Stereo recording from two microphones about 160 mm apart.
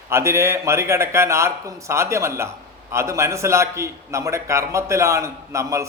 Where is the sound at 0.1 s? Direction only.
15° right (ahead or behind).